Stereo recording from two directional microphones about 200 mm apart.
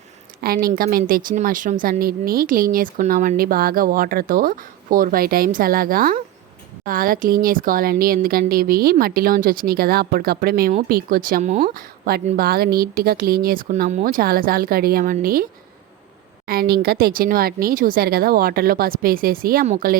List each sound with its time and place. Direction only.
0.4 s a woman's voice: 45° right (ahead or behind)
16.5 s a woman's voice: 50° right (ahead or behind)